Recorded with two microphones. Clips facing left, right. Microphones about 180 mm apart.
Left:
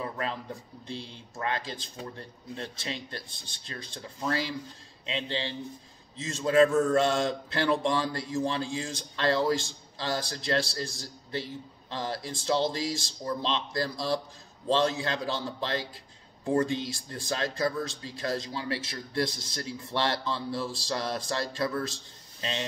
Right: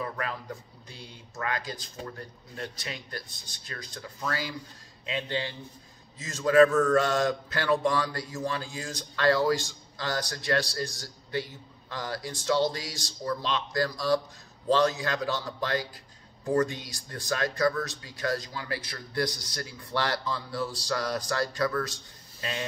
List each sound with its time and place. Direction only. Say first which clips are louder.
0.0 s a sound: even; 25° left (ahead or behind)
0.8 s a man's voice: left 8 dB; 30° left (ahead or behind)
11.9 s a man's voice: left 1 dB; 30° left (ahead or behind)